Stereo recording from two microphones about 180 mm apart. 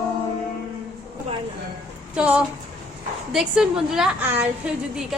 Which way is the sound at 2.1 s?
5° right (ahead or behind).